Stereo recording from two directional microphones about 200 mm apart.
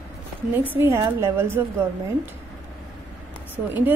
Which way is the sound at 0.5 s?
10° right (ahead or behind).